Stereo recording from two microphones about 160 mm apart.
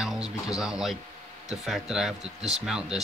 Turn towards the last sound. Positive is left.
turn(degrees=-5)  # may be behind; listen again after turning